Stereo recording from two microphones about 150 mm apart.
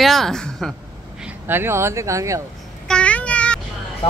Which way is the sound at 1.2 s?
15° right (ahead or behind).